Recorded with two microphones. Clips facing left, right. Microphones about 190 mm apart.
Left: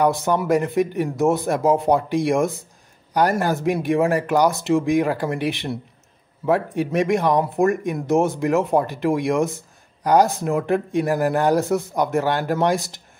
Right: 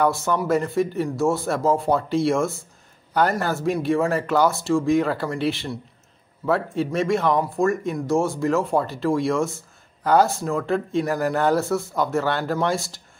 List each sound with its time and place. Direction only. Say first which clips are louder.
0.0 s speech: left 2 dB; 15° left (ahead or behind)